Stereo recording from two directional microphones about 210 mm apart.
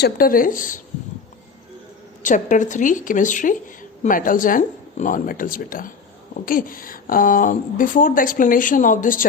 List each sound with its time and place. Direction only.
0.0 s a woman's voice: 45° left (ahead or behind)
2.2 s a woman's voice: 35° left (ahead or behind)